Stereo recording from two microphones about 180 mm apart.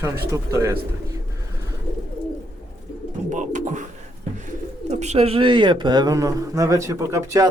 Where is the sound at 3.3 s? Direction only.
45° right (ahead or behind).